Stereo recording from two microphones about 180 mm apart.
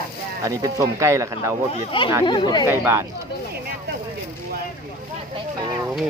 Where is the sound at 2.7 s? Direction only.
15° right (ahead or behind).